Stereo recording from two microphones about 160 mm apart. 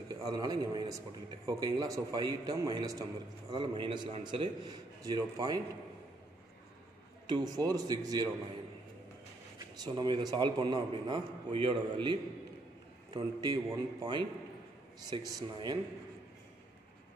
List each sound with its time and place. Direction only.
0.1 s a man's voice: 25° right (ahead or behind)
7.2 s a man's voice: 25° right (ahead or behind)
9.8 s a man's voice: 30° right (ahead or behind)